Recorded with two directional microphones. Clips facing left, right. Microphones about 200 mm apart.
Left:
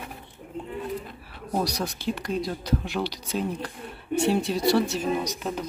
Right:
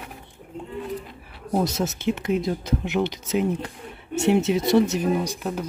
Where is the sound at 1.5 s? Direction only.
25° right (ahead or behind).